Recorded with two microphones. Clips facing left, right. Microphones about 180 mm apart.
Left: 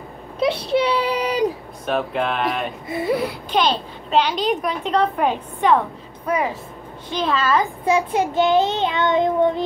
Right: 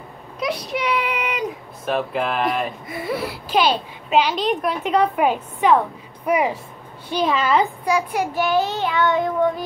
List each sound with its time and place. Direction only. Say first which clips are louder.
0.4 s a sound: left 6 dB; 30° left (ahead or behind)
1.9 s a child's voice: even; centre (ahead or behind)
6.2 s a child's voice: right 2 dB; 15° right (ahead or behind)
7.8 s child singing: left 2 dB; 25° left (ahead or behind)